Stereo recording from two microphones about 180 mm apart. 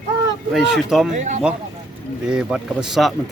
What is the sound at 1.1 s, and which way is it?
Speech, 40° right (ahead or behind).